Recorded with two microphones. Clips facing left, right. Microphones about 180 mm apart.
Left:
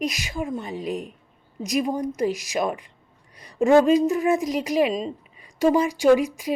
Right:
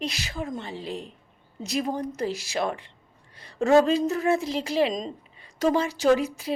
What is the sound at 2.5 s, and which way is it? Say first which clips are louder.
A woman's voice: left 3 dB; 15° left (ahead or behind).